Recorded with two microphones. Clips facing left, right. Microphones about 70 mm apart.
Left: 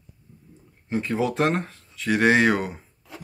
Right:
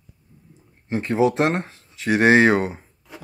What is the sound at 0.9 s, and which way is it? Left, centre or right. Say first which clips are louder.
Speech: right 5 dB; right.